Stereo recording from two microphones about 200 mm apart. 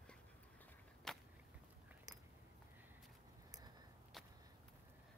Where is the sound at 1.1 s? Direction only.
5° left (ahead or behind).